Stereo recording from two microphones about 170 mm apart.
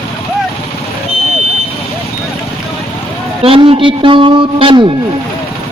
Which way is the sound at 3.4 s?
35° right (ahead or behind).